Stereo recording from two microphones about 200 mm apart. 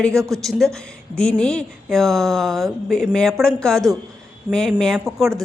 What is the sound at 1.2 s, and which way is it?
A woman's voice, 5° left (ahead or behind).